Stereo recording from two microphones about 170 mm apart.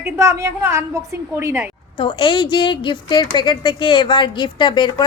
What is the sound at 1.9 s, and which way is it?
A woman's voice, 30° left (ahead or behind).